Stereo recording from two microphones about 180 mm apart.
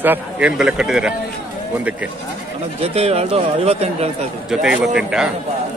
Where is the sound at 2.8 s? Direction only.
35° right (ahead or behind).